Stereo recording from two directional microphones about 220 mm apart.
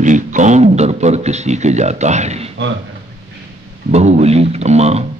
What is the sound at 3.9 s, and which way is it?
A man's voice, 30° right (ahead or behind).